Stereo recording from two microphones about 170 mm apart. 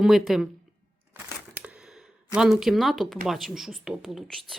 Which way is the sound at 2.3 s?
Centre (ahead or behind).